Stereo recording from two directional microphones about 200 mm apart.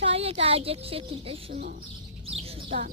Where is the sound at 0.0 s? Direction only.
30° right (ahead or behind).